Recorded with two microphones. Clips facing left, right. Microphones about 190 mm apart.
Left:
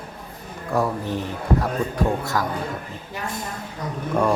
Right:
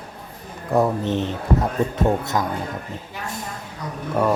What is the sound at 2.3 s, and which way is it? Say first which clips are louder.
Speech: right 1 dB; 20° right (ahead or behind).